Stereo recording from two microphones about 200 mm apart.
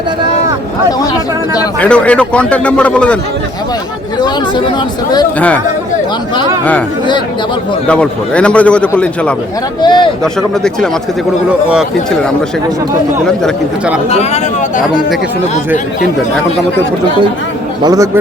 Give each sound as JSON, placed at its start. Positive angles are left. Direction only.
{"t": 1.8, "sound": "a man's voice", "side_deg": 5}
{"t": 7.9, "sound": "a man's voice", "side_deg": 5}
{"t": 9.8, "sound": "speech", "side_deg": 20}
{"t": 11.7, "sound": "a man's voice", "side_deg": -5}
{"t": 14.1, "sound": "speech", "side_deg": 35}
{"t": 17.8, "sound": "a man's voice", "side_deg": -15}